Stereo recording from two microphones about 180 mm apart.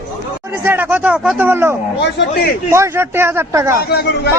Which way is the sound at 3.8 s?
65° left (ahead or behind).